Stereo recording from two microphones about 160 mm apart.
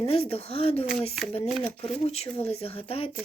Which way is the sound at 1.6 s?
10° left (ahead or behind).